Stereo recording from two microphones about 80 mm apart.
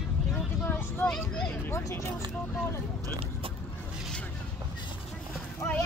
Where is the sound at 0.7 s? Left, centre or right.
Left.